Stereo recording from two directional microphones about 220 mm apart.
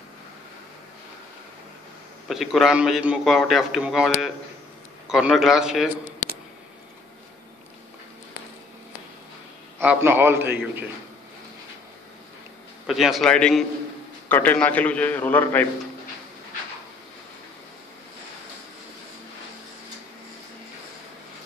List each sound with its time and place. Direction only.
2.2 s a man's voice: centre (ahead or behind)
10.0 s a man's voice: 10° right (ahead or behind)
12.8 s a man's voice: centre (ahead or behind)